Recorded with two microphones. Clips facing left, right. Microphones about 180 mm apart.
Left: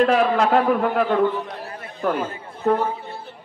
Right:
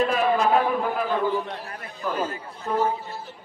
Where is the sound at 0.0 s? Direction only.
75° left (ahead or behind).